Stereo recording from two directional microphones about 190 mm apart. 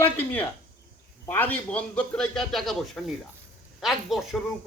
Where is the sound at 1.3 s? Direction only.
10° left (ahead or behind).